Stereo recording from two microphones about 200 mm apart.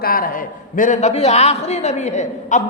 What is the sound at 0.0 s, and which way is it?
A man's voice, 45° left (ahead or behind).